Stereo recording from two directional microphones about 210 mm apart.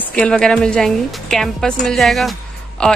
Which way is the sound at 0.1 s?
5° left (ahead or behind).